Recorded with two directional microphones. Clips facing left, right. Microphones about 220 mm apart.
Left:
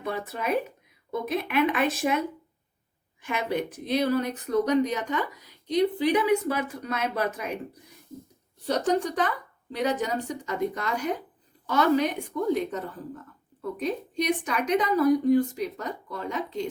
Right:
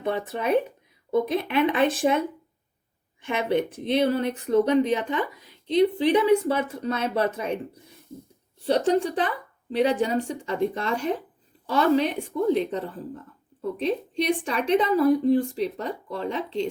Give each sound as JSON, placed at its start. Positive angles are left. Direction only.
{"t": 0.0, "sound": "a woman's voice", "side_deg": -30}
{"t": 8.6, "sound": "a woman's voice", "side_deg": -25}